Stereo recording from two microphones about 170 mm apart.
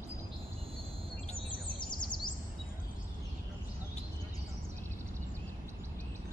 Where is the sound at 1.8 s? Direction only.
25° left (ahead or behind).